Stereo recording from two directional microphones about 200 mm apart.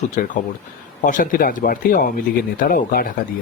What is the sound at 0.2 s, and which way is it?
Speech, 40° left (ahead or behind).